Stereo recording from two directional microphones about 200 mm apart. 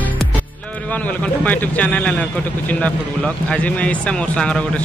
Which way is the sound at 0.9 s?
10° left (ahead or behind).